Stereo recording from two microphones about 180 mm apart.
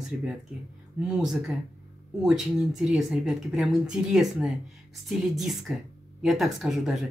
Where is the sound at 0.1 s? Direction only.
5° right (ahead or behind).